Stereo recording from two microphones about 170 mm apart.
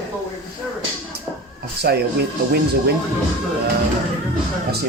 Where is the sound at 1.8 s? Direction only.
70° right (ahead or behind).